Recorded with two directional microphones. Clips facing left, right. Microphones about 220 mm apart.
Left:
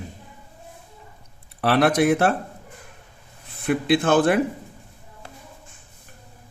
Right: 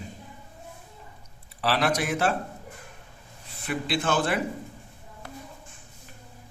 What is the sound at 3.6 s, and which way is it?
Speech, 55° left (ahead or behind).